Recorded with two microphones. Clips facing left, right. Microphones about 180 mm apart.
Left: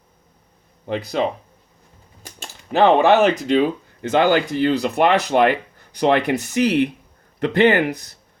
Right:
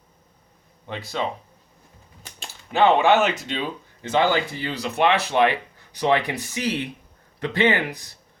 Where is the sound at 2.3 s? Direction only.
40° left (ahead or behind).